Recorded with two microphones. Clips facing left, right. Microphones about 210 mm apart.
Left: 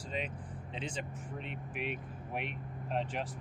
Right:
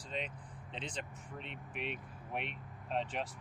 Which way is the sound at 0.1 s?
5° left (ahead or behind).